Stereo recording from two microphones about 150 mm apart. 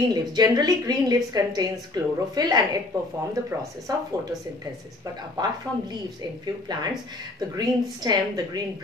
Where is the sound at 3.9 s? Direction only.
25° right (ahead or behind).